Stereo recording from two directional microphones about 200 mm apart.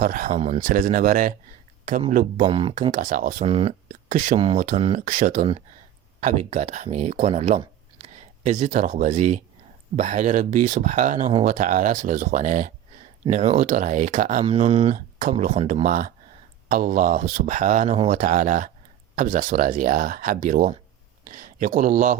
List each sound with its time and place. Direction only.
0.0 s speech: 45° right (ahead or behind)
2.4 s speech: 25° right (ahead or behind)
2.9 s speech: 40° right (ahead or behind)
3.4 s speech: 30° right (ahead or behind)
14.4 s speech: 30° right (ahead or behind)
14.9 s speech: 40° right (ahead or behind)